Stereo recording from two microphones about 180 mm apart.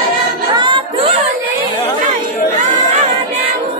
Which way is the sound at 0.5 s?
25° right (ahead or behind).